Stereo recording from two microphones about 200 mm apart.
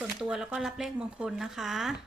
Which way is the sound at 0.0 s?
5° right (ahead or behind).